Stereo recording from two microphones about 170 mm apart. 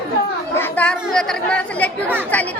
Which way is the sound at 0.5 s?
10° left (ahead or behind).